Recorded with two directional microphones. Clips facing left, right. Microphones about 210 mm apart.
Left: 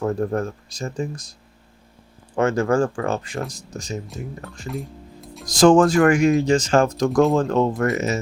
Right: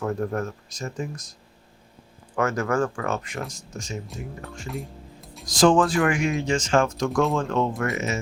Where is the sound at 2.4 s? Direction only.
30° left (ahead or behind).